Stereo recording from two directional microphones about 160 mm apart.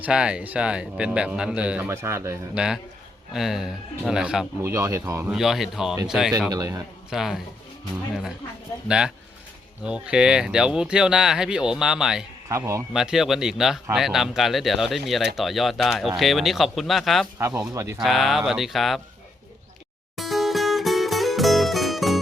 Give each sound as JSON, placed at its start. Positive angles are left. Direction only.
{"t": 0.0, "sound": "speech", "side_deg": -5}
{"t": 2.6, "sound": "speech", "side_deg": -5}
{"t": 4.6, "sound": "speech", "side_deg": -20}
{"t": 5.3, "sound": "speech", "side_deg": 0}
{"t": 6.5, "sound": "speech", "side_deg": -20}
{"t": 7.1, "sound": "speech", "side_deg": 0}
{"t": 8.9, "sound": "speech", "side_deg": -5}
{"t": 12.5, "sound": "speech", "side_deg": -20}
{"t": 12.9, "sound": "speech", "side_deg": -5}
{"t": 17.3, "sound": "speech", "side_deg": -20}
{"t": 18.0, "sound": "speech", "side_deg": 0}
{"t": 20.1, "sound": "music", "side_deg": 0}